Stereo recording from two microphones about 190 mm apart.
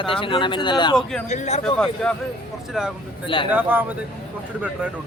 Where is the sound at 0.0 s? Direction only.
25° left (ahead or behind).